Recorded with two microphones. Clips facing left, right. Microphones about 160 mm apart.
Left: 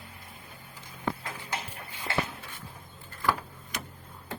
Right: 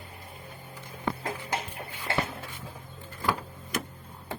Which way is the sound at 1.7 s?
35° right (ahead or behind).